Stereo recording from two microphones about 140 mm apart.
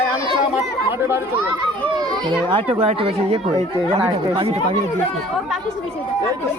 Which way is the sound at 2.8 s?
45° right (ahead or behind).